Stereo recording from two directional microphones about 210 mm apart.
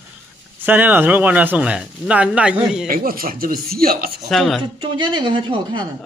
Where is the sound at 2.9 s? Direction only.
45° right (ahead or behind).